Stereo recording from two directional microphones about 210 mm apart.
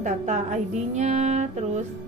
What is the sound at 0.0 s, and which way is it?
A woman's voice, 35° right (ahead or behind).